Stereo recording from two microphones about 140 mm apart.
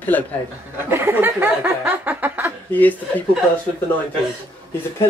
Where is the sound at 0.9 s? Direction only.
15° right (ahead or behind).